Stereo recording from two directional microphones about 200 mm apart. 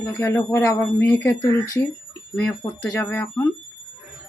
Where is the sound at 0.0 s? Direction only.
15° left (ahead or behind).